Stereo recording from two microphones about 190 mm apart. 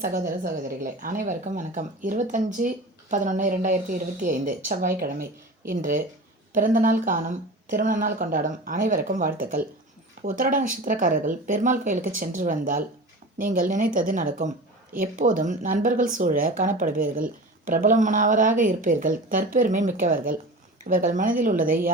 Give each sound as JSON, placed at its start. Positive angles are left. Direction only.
{"t": 0.0, "sound": "speech", "side_deg": -45}